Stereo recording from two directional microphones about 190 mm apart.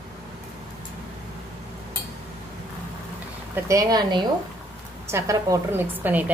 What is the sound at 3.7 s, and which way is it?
A woman's voice, 20° right (ahead or behind).